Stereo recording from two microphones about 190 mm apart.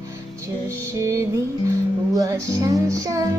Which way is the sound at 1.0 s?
15° right (ahead or behind).